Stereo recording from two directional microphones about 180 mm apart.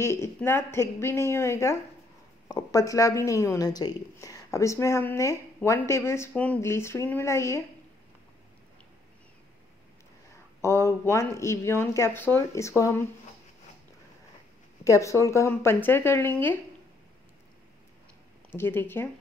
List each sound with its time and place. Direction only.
0.0 s speech: 15° left (ahead or behind)
10.6 s speech: 15° left (ahead or behind)
14.9 s speech: 15° left (ahead or behind)
18.5 s speech: 10° left (ahead or behind)